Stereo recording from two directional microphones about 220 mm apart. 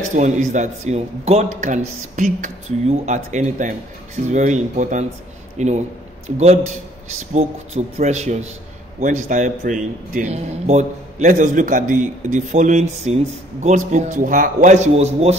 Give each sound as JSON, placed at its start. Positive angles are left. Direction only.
{"t": 0.1, "sound": "a man's voice", "side_deg": -35}